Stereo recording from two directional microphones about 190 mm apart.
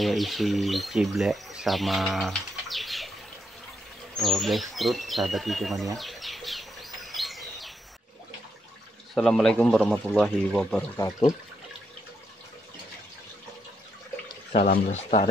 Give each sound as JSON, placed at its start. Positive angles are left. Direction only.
{"t": 0.0, "sound": "speech", "side_deg": 0}
{"t": 4.2, "sound": "speech", "side_deg": 0}
{"t": 5.9, "sound": "bird", "side_deg": 0}
{"t": 9.1, "sound": "speech", "side_deg": 0}
{"t": 11.0, "sound": "speech", "side_deg": 15}
{"t": 14.9, "sound": "speech", "side_deg": 35}